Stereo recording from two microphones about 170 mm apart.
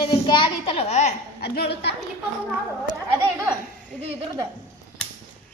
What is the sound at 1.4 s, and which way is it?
Speech, 70° left (ahead or behind).